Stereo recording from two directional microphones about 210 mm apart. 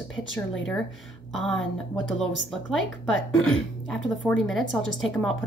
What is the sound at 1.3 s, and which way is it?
A woman's voice, centre (ahead or behind).